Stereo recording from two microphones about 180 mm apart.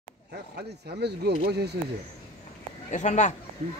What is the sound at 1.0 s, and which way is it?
Speech, 65° right (ahead or behind).